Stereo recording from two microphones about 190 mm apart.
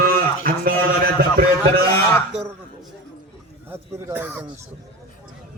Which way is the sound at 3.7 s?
10° right (ahead or behind).